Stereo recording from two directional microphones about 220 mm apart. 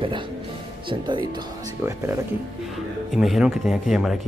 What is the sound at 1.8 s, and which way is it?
Speech, 10° right (ahead or behind).